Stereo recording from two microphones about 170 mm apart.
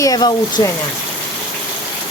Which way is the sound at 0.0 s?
25° left (ahead or behind).